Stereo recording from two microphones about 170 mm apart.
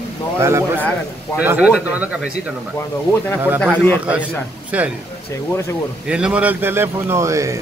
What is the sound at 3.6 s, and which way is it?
Speech, 10° left (ahead or behind).